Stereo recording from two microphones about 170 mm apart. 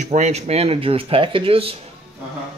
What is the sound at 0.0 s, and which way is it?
Speech, 45° right (ahead or behind).